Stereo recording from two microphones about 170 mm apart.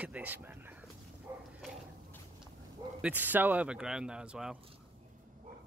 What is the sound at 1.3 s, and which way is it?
Bow-wow, 20° right (ahead or behind).